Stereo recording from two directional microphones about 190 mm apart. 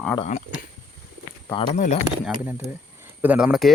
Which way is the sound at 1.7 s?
40° left (ahead or behind).